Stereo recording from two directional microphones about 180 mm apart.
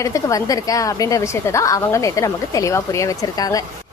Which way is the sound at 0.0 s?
20° left (ahead or behind).